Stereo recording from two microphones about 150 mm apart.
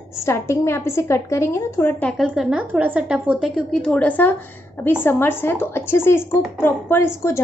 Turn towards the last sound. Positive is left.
turn(degrees=15)  # may be behind; listen again after turning